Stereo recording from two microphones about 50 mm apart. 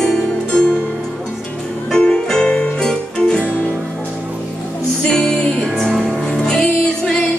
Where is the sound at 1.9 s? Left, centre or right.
Centre.